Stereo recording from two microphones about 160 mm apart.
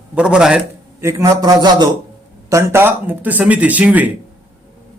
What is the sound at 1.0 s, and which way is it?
A man's voice, 20° right (ahead or behind).